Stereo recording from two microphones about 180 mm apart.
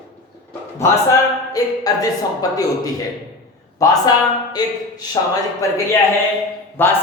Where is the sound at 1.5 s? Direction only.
20° left (ahead or behind).